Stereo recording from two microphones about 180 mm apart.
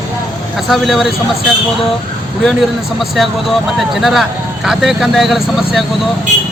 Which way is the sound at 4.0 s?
Centre (ahead or behind).